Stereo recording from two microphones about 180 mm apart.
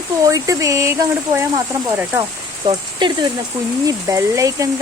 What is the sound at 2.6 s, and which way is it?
Speech, 25° right (ahead or behind).